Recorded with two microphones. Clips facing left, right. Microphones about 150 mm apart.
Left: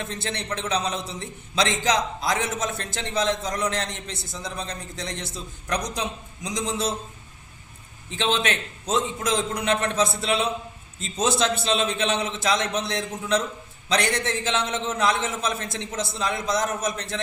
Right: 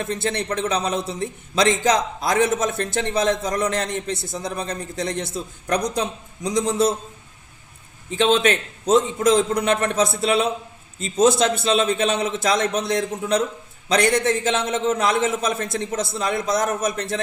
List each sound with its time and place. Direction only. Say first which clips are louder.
0.2 s a man's voice: right 6 dB; 50° right (ahead or behind)
8.2 s a man's voice: right 7 dB; 45° right (ahead or behind)